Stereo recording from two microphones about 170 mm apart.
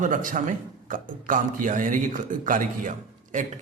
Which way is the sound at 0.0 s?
50° right (ahead or behind).